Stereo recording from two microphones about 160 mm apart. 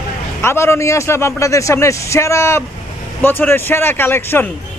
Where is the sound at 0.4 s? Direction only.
15° left (ahead or behind).